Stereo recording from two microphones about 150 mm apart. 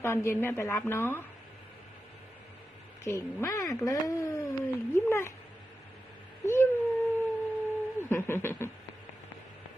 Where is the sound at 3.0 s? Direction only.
20° left (ahead or behind).